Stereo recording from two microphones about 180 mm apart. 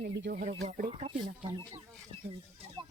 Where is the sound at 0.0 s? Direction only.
65° right (ahead or behind).